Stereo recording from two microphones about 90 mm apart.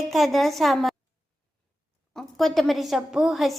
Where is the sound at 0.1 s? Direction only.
Centre (ahead or behind).